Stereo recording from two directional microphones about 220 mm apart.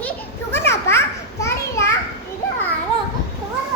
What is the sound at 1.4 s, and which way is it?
Children playing, 10° left (ahead or behind).